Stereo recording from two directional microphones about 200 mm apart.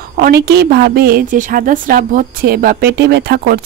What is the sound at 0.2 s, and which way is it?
Speech, 50° right (ahead or behind).